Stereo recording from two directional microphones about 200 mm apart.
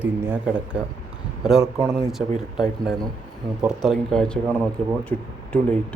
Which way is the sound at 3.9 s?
5° left (ahead or behind).